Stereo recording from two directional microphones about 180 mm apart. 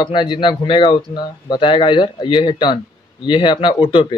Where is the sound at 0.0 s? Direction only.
25° left (ahead or behind).